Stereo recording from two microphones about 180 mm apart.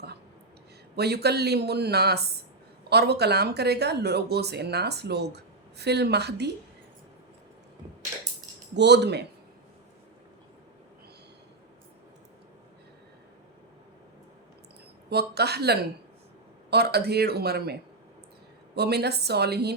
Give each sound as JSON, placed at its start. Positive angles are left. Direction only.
{"t": 0.9, "sound": "speech", "side_deg": -65}
{"t": 8.7, "sound": "speech", "side_deg": -70}
{"t": 15.1, "sound": "speech", "side_deg": -65}